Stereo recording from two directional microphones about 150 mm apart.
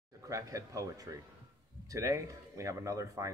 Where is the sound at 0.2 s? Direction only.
20° right (ahead or behind).